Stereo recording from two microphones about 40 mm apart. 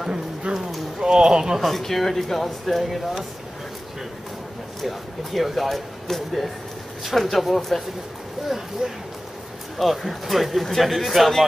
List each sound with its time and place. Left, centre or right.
0.5 s a sound: right
1.0 s speech: right
1.6 s speech: centre
4.8 s speech: centre
8.4 s speech: centre
9.8 s speech: centre